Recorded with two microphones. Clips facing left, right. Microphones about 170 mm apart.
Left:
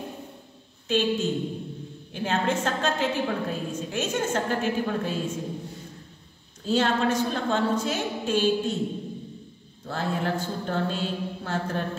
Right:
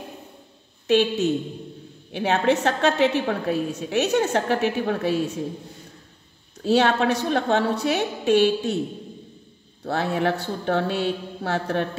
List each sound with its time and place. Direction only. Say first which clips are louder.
0.8 s a woman's voice: right 5 dB; 70° right (ahead or behind)
6.6 s a woman's voice: right 4 dB; 70° right (ahead or behind)
9.8 s a woman's voice: right 5 dB; 70° right (ahead or behind)